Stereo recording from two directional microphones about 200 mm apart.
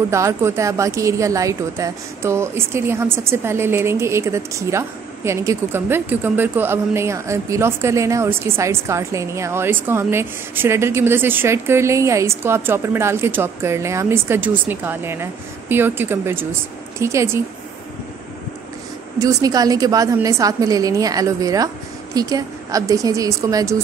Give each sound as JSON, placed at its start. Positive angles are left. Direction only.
{"t": 0.1, "sound": "speech", "side_deg": -15}
{"t": 19.1, "sound": "speech", "side_deg": -20}